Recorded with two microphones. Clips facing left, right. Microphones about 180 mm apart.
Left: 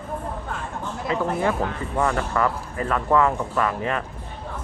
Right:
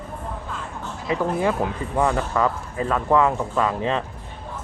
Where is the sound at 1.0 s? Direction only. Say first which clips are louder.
Right 1 dB; 15° right (ahead or behind).